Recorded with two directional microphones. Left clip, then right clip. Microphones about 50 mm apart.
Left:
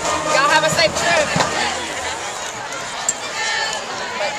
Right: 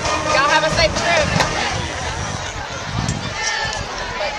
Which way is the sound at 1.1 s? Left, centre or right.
Right.